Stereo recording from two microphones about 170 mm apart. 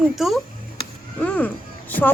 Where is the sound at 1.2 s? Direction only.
10° left (ahead or behind).